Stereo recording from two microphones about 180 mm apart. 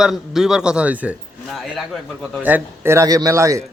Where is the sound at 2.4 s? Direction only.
10° right (ahead or behind).